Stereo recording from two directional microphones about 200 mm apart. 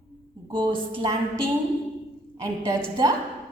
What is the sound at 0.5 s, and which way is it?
Speech, 25° right (ahead or behind).